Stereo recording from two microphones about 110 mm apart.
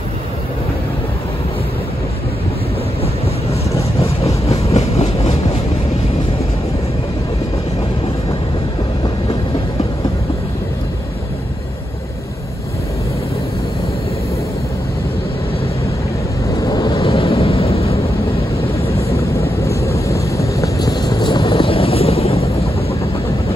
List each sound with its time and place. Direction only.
4.5 s train: 65° left (ahead or behind)
16.5 s vehicle: 35° left (ahead or behind)
17.1 s vehicle: 60° left (ahead or behind)
19.1 s vehicle: 25° left (ahead or behind); by 22.8 s 65° left (ahead or behind)